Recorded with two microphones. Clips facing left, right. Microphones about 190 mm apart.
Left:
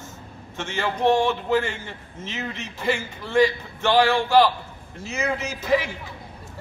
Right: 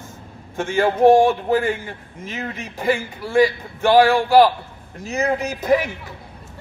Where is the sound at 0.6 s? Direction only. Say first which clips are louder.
Right 8 dB; 50° right (ahead or behind).